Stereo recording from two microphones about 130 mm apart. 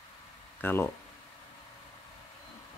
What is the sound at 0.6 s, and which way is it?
Speech, 15° left (ahead or behind).